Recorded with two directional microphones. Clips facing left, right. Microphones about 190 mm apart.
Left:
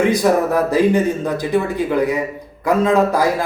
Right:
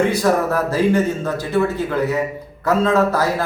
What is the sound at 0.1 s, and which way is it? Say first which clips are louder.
Speech: left 2 dB; 15° left (ahead or behind).